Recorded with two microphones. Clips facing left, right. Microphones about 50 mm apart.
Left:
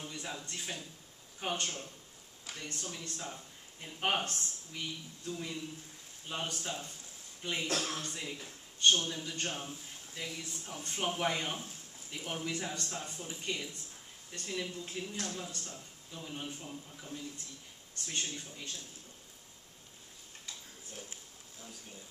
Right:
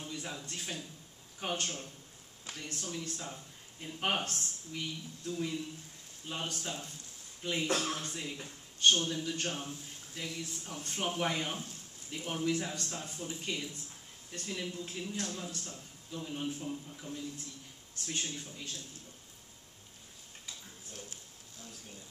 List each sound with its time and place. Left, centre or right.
0.0 s a man's voice: centre
7.6 s speech: right
8.1 s a man's voice: centre
18.2 s speech: centre